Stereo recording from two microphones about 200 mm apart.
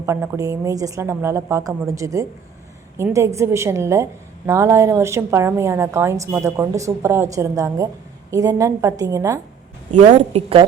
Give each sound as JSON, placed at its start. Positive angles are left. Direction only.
{"t": 0.0, "sound": "a woman's voice", "side_deg": -15}
{"t": 9.9, "sound": "a woman's voice", "side_deg": -35}